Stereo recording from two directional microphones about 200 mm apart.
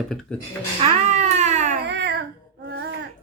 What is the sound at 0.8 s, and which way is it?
Cat, 35° right (ahead or behind).